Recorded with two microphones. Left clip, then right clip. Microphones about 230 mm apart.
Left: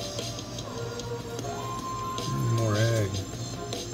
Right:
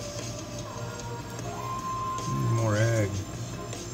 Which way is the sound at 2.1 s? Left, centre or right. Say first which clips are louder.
Even; left.